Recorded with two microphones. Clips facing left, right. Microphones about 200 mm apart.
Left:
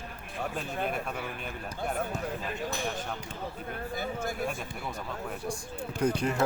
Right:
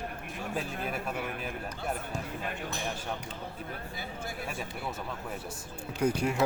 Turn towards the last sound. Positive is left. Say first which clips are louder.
# even
turn(degrees=-10)  # may be behind; listen again after turning